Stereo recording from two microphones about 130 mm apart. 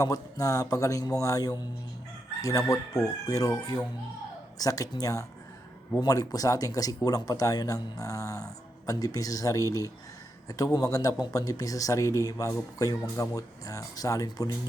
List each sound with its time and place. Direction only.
0.0 s speech: 30° left (ahead or behind)